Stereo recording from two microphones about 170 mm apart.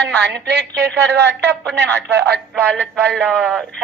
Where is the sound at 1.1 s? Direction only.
80° right.